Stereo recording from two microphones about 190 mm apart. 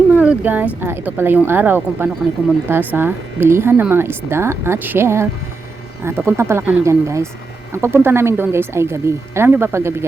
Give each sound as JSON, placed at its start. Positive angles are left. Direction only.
{"t": 0.2, "sound": "speech", "side_deg": -5}